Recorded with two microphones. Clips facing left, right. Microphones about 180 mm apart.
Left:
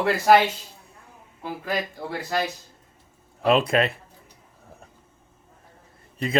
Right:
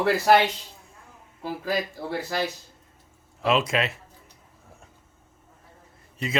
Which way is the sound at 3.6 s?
55° left (ahead or behind).